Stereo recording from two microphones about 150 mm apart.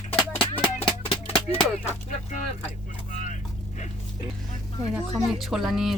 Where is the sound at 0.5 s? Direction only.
35° left (ahead or behind).